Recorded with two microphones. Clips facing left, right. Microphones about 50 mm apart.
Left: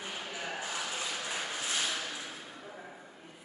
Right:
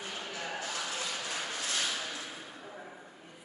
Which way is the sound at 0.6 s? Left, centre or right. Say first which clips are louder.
Even; centre.